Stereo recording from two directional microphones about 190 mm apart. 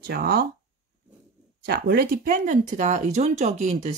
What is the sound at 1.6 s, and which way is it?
Speech, 55° right (ahead or behind).